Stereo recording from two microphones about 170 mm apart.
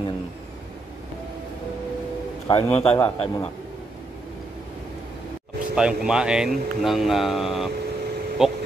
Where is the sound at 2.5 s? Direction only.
35° left (ahead or behind).